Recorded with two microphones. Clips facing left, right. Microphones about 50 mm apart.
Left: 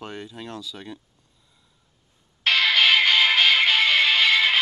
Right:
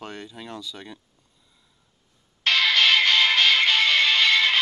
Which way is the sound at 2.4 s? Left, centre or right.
Centre.